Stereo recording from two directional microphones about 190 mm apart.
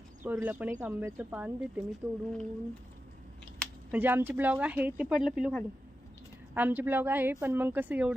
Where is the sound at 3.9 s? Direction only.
10° right (ahead or behind).